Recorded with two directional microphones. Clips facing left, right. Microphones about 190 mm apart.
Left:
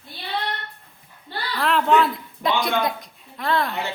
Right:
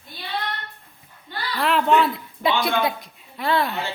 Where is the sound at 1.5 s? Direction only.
Centre (ahead or behind).